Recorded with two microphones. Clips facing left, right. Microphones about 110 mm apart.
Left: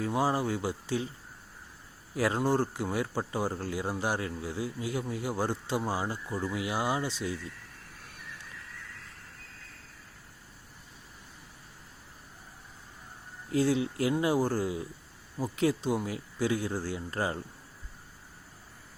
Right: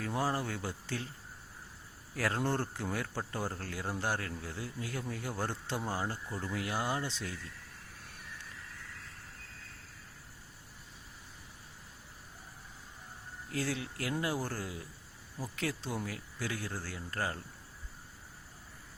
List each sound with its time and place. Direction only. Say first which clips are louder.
0.0 s speech: left 5 dB; 15° left (ahead or behind)
2.1 s speech: left 6 dB; 15° left (ahead or behind)
13.5 s speech: left 10 dB; 20° left (ahead or behind)